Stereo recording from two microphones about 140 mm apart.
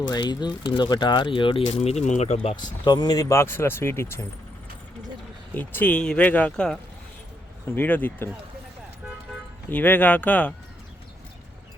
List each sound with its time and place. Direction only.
0.1 s speech: 30° left (ahead or behind)
1.6 s speech: 50° left (ahead or behind)
2.8 s speech: 30° left (ahead or behind)
5.5 s speech: 10° left (ahead or behind)
7.8 s speech: 15° left (ahead or behind)
9.6 s speech: 15° left (ahead or behind)